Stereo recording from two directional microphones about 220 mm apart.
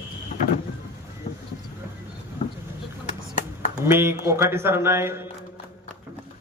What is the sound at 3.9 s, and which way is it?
A man's voice, 10° right (ahead or behind).